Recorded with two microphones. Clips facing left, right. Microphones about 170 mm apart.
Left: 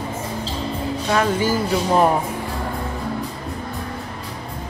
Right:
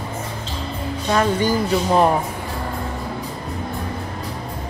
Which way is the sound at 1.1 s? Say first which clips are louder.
Right 1 dB; 5° left (ahead or behind).